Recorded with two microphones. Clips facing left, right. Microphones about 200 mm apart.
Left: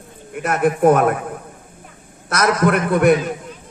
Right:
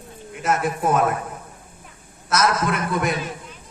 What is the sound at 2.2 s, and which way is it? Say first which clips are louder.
Speech: left 4 dB; 60° left (ahead or behind).